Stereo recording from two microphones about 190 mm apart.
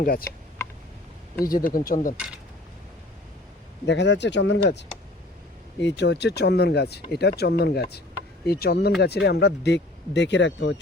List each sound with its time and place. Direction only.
0.0 s speech: 50° left (ahead or behind)
0.6 s tick: 15° left (ahead or behind)
1.5 s speech: 50° left (ahead or behind)
3.8 s speech: 65° left (ahead or behind)
5.8 s speech: 65° left (ahead or behind)